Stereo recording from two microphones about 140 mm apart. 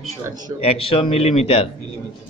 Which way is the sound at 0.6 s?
45° left (ahead or behind).